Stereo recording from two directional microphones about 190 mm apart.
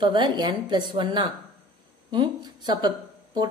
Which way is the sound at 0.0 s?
25° right (ahead or behind).